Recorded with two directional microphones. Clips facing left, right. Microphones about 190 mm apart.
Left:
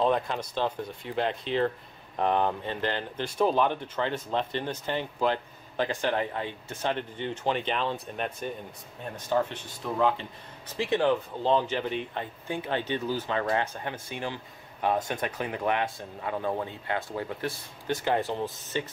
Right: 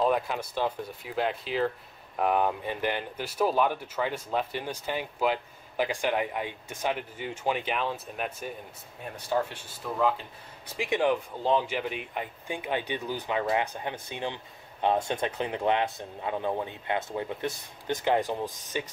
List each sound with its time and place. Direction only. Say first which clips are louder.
0.0 s speech: even; 5° right (ahead or behind)
10.8 s speech: left 1 dB; 15° right (ahead or behind)